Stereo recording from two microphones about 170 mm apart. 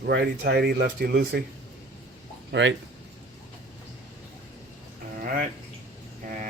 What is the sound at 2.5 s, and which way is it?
Speech, 90° right.